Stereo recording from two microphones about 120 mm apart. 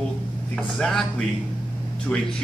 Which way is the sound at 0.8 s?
5° left (ahead or behind).